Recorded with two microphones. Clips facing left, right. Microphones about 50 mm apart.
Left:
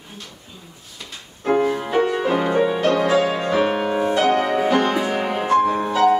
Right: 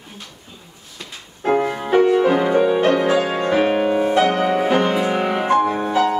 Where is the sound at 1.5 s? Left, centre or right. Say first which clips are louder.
Right 1 dB; centre.